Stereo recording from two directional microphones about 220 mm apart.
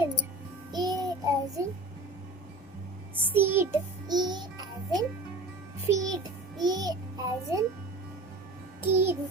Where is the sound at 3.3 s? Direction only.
10° right (ahead or behind).